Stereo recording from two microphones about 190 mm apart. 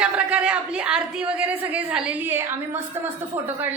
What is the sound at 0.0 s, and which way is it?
A woman's voice, 5° right (ahead or behind).